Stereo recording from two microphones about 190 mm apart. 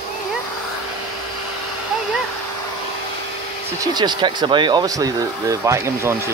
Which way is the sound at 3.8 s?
20° right (ahead or behind).